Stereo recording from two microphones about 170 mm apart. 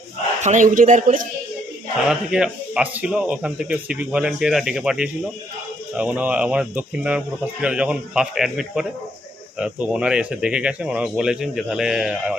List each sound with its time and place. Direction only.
0.4 s speech: 50° right (ahead or behind)
2.0 s speech: 5° right (ahead or behind)